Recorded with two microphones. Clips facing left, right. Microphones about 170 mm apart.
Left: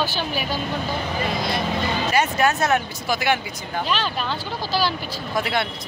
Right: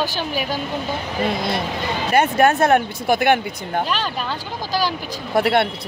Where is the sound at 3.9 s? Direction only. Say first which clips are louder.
Even; 10° right (ahead or behind).